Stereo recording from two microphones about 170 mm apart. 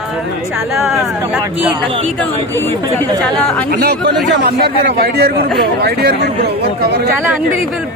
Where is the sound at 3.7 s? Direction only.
65° right (ahead or behind).